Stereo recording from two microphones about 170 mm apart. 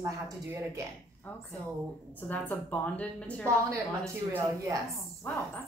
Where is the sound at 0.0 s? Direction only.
15° right (ahead or behind).